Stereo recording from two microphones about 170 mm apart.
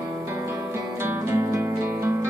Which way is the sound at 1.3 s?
15° right (ahead or behind).